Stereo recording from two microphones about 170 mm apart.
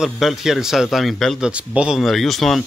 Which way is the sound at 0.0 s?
Centre (ahead or behind).